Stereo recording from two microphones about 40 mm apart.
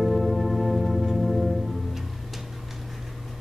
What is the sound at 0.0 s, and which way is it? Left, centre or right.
Music, centre.